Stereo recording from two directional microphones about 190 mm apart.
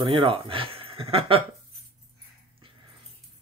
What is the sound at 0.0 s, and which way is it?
Speech, 25° right (ahead or behind).